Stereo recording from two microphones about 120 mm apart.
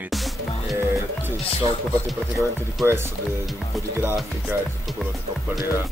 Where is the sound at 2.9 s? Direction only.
20° right (ahead or behind).